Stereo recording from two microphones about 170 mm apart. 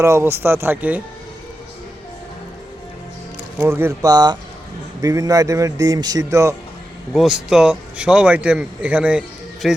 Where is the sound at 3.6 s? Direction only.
15° right (ahead or behind).